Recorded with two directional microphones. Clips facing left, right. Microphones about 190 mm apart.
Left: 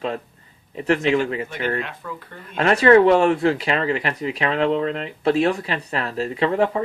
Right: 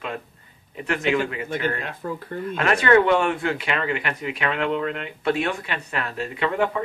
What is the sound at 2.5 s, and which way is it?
Speech, 35° left (ahead or behind).